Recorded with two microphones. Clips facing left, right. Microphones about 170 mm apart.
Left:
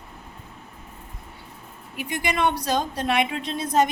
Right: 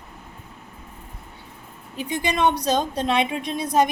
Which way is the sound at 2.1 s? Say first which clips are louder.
Right 2 dB; 20° right (ahead or behind).